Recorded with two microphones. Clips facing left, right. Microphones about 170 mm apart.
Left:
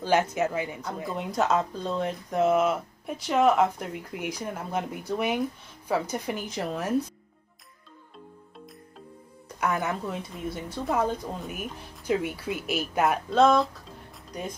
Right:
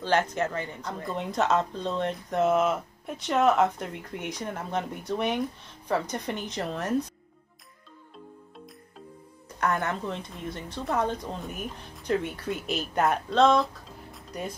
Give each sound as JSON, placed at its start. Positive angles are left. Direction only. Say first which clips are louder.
{"t": 0.0, "sound": "speech", "louder": "left 2 dB", "side_deg": 10}
{"t": 9.6, "sound": "speech", "louder": "even", "side_deg": 5}